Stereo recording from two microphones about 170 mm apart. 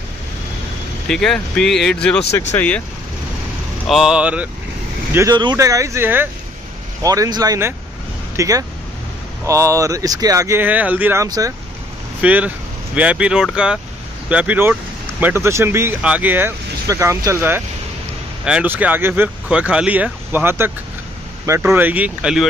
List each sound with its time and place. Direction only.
1.0 s speech: 5° left (ahead or behind)
3.8 s speech: centre (ahead or behind)
5.1 s speech: 20° right (ahead or behind)
11.2 s speech: 20° right (ahead or behind)
12.2 s speech: 10° right (ahead or behind)